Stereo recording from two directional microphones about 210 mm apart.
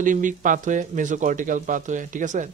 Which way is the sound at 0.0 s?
40° right (ahead or behind).